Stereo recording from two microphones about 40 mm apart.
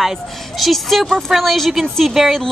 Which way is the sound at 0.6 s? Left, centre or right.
Centre.